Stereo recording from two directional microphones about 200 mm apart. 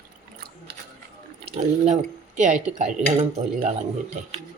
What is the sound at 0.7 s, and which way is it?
Mechanisms, 55° right (ahead or behind).